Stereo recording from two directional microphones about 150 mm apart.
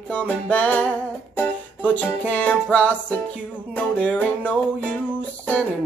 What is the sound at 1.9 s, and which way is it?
Music, 10° left (ahead or behind).